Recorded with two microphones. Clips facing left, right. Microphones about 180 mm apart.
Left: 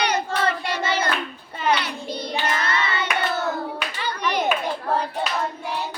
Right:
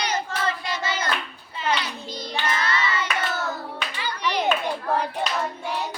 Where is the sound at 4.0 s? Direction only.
50° left (ahead or behind).